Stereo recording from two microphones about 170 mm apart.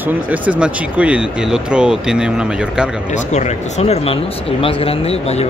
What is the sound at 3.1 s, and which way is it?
Speech, 45° left (ahead or behind).